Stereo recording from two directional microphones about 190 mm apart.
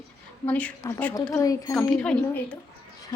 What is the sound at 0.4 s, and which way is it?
A woman's voice, 10° left (ahead or behind).